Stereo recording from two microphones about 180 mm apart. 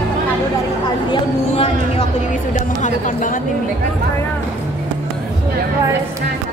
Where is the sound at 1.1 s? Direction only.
35° left (ahead or behind).